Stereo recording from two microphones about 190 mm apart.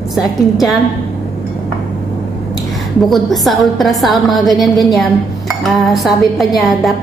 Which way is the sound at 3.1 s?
Centre (ahead or behind).